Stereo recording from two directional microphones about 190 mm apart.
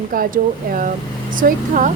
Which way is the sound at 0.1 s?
45° right (ahead or behind).